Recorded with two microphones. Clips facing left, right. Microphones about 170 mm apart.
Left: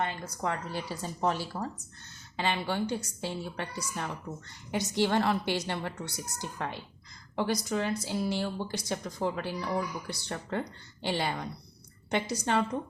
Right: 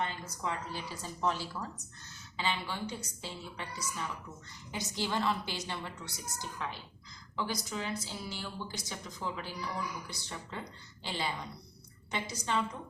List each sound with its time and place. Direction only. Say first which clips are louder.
0.0 s a woman's voice: left 4 dB; 60° left (ahead or behind)
1.2 s speech: left 3 dB; 45° left (ahead or behind)
2.3 s a woman's voice: left 5 dB; 60° left (ahead or behind)